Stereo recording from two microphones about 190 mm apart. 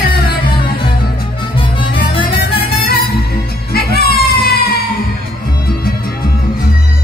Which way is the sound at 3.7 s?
55° left (ahead or behind).